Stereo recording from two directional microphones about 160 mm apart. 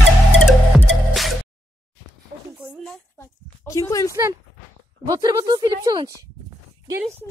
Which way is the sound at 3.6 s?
20° left (ahead or behind).